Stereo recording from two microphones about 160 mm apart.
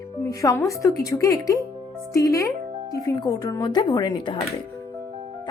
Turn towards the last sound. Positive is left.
turn(degrees=25)  # may be behind; listen again after turning